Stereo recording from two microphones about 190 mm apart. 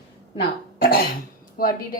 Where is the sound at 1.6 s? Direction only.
50° left (ahead or behind).